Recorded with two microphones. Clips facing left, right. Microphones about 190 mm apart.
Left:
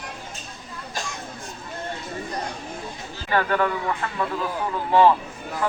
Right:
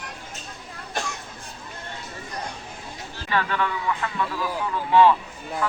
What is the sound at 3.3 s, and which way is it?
Speech, 45° left (ahead or behind).